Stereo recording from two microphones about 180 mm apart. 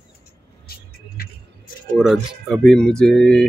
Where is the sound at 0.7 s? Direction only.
55° left (ahead or behind).